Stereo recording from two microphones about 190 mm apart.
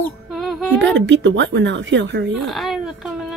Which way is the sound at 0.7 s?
70° right (ahead or behind).